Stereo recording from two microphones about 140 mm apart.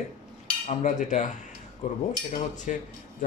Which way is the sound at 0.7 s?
60° left (ahead or behind).